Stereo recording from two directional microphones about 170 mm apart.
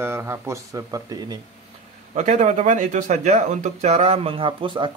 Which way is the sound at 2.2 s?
45° right (ahead or behind).